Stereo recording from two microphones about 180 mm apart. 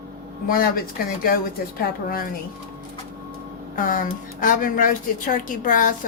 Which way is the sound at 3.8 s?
50° left (ahead or behind).